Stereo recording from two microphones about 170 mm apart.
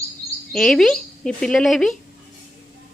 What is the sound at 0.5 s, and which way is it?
Speech, centre (ahead or behind).